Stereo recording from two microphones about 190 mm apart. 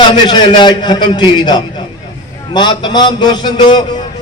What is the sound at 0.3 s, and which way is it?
A man's voice, 25° left (ahead or behind).